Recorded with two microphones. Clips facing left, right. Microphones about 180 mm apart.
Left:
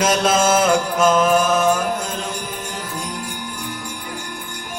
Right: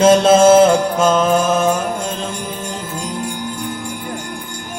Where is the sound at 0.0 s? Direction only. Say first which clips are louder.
Right 8 dB; 25° right (ahead or behind).